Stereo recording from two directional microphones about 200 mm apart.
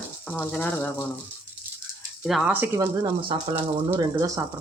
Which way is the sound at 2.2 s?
5° right (ahead or behind).